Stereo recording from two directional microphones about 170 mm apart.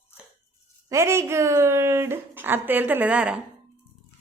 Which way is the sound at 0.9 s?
15° right (ahead or behind).